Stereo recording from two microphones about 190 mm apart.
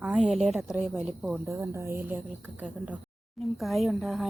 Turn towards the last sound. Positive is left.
turn(degrees=0)  # may be behind; listen again after turning